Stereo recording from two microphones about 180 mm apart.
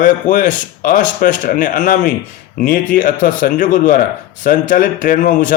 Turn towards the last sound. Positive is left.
turn(degrees=45)  # may be behind; listen again after turning